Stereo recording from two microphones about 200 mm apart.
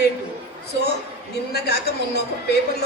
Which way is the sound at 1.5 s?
55° left (ahead or behind).